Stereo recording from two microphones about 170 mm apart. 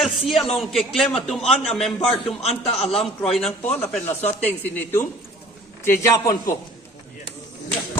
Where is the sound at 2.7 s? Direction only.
35° left (ahead or behind).